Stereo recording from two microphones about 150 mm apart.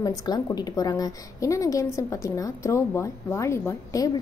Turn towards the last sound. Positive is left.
turn(degrees=25)  # may be behind; listen again after turning